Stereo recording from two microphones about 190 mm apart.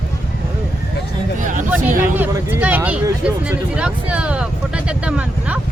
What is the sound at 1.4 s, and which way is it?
Speech, 45° right (ahead or behind).